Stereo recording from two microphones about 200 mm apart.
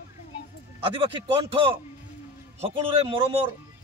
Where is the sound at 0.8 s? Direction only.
25° right (ahead or behind).